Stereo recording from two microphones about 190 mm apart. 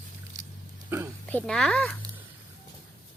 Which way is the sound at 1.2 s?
5° left (ahead or behind).